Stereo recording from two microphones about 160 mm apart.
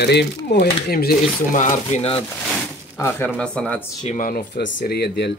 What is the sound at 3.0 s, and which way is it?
Speech, 10° left (ahead or behind).